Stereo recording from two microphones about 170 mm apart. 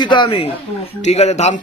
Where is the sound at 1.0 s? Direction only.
40° left (ahead or behind).